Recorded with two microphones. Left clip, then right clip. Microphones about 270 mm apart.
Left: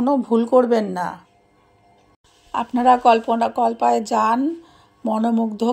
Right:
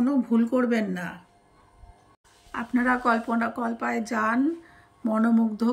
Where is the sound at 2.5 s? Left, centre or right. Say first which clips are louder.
Left 6 dB; left.